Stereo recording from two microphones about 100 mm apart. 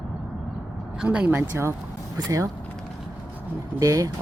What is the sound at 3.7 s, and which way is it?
Speech, 35° right (ahead or behind).